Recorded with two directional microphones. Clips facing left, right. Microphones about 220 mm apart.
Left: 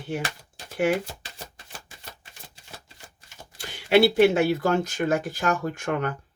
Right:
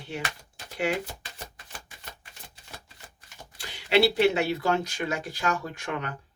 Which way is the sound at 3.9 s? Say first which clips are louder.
Left 4 dB; 50° left (ahead or behind).